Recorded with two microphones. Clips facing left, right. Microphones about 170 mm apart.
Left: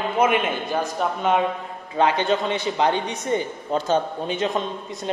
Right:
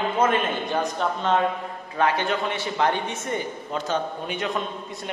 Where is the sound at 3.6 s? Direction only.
30° left (ahead or behind).